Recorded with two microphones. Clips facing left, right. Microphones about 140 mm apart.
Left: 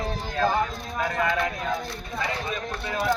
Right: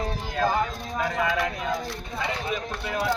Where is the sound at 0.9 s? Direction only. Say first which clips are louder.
Even; 5° right (ahead or behind).